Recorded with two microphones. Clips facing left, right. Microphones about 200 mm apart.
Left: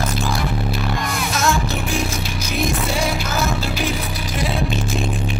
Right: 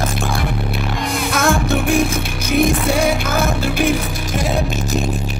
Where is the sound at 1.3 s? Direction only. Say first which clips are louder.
Right 5 dB; 55° right (ahead or behind).